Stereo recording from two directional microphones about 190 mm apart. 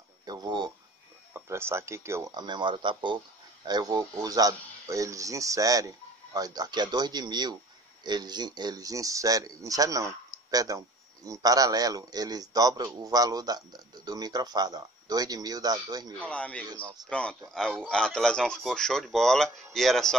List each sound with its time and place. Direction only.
0.2 s a sound: 20° right (ahead or behind)
1.3 s speech: 15° right (ahead or behind)
16.3 s speech: 5° left (ahead or behind)